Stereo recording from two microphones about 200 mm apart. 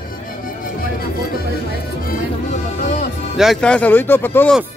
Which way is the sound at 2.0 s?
40° left (ahead or behind).